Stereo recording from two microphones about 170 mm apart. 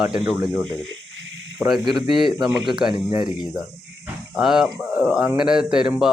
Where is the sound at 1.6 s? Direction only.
15° right (ahead or behind).